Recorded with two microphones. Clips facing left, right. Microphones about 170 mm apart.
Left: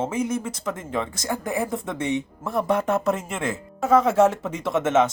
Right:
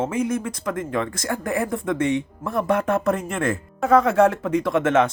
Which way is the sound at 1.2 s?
20° left (ahead or behind).